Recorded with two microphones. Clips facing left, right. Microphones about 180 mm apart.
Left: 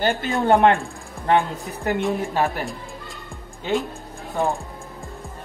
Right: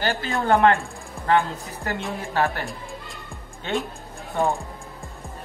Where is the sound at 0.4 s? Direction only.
20° left (ahead or behind).